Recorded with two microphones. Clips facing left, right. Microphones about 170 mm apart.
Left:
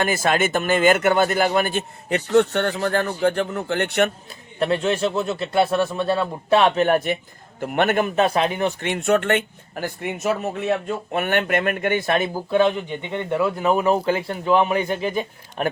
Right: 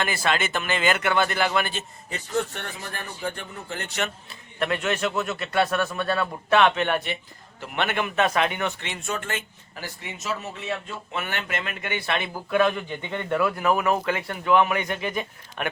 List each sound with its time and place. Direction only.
0.0 s a man's voice: 45° left (ahead or behind)
2.0 s a man's voice: 70° left (ahead or behind)
4.3 s a man's voice: 35° left (ahead or behind)
8.8 s speech: 60° left (ahead or behind); by 12.4 s 40° left (ahead or behind)
12.5 s speech: 25° left (ahead or behind)